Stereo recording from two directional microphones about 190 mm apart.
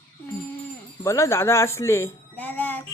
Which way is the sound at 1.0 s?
15° left (ahead or behind).